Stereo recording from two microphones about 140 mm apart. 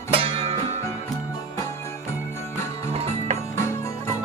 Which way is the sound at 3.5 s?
20° left (ahead or behind).